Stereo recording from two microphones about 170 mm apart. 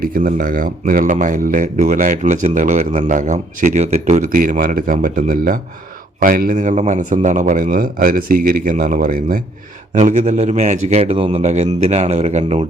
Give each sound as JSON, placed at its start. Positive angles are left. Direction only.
{"t": 0.0, "sound": "a man's voice", "side_deg": -55}